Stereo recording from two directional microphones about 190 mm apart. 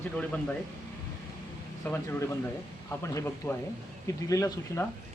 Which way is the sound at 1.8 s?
15° left (ahead or behind).